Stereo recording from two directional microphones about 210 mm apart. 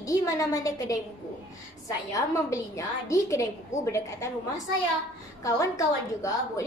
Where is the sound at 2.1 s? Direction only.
15° left (ahead or behind).